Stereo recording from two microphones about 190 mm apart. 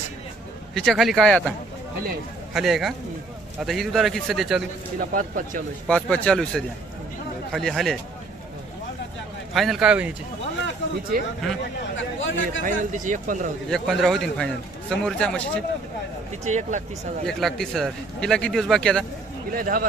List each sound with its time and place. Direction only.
0.7 s a man's voice: centre (ahead or behind)
4.9 s speech: 45° right (ahead or behind)
5.9 s a man's voice: 5° left (ahead or behind)
9.6 s a man's voice: centre (ahead or behind)
11.9 s chatter: 80° left
12.6 s speech: 45° right (ahead or behind)
13.7 s a man's voice: centre (ahead or behind)
16.4 s speech: 40° right (ahead or behind)
17.2 s a man's voice: centre (ahead or behind)
19.5 s speech: 50° right (ahead or behind)